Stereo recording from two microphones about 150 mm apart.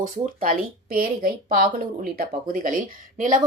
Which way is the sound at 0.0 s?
70° right (ahead or behind).